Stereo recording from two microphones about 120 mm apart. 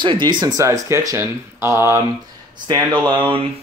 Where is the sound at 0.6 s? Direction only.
25° right (ahead or behind).